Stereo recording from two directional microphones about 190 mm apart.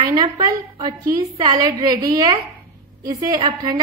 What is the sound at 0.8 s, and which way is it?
A woman's voice, 25° right (ahead or behind).